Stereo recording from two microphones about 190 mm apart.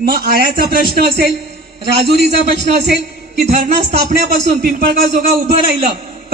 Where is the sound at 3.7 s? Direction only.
35° right (ahead or behind).